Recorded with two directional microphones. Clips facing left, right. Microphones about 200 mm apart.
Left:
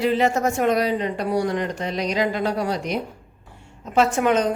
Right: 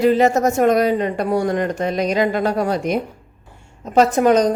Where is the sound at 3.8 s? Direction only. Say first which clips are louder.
Right 5 dB; 40° right (ahead or behind).